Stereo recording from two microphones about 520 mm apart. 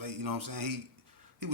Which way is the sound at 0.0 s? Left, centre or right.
Right.